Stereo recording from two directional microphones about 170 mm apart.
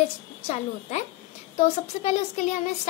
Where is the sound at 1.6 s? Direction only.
45° left (ahead or behind).